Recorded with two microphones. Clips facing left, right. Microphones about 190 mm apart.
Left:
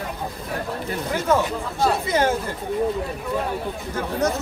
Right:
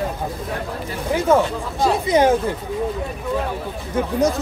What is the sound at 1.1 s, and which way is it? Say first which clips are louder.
Speech: right 5 dB; 15° right (ahead or behind).